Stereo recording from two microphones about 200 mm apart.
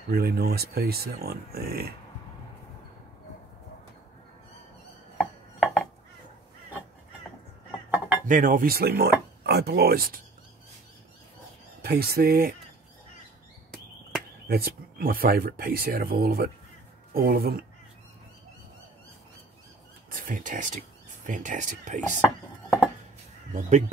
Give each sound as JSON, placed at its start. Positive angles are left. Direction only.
{"t": 0.1, "sound": "speech", "side_deg": -50}
{"t": 5.1, "sound": "chopping", "side_deg": 0}
{"t": 8.3, "sound": "speech", "side_deg": -40}
{"t": 11.8, "sound": "speech", "side_deg": -50}
{"t": 14.5, "sound": "speech", "side_deg": -50}
{"t": 20.2, "sound": "speech", "side_deg": -40}